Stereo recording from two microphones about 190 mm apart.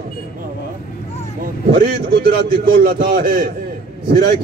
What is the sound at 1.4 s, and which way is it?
A man's voice, 50° right (ahead or behind).